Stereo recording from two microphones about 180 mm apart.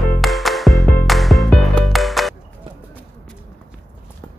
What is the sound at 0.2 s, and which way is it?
Music, centre (ahead or behind).